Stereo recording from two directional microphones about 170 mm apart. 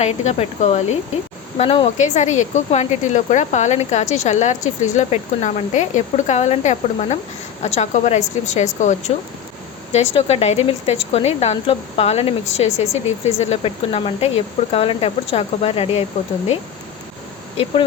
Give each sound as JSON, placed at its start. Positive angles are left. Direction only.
{"t": 0.0, "sound": "speech", "side_deg": 40}